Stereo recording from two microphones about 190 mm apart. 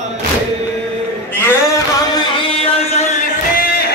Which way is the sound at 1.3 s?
15° left (ahead or behind).